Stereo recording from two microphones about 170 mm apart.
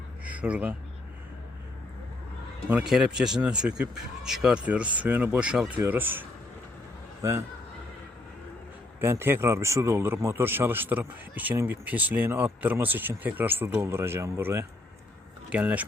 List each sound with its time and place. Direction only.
0.3 s speech: 10° right (ahead or behind)
2.6 s speech: 5° right (ahead or behind)
9.0 s speech: 15° right (ahead or behind)